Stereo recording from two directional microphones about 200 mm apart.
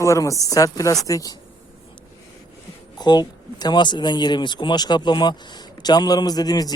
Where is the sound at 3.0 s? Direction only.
20° left (ahead or behind).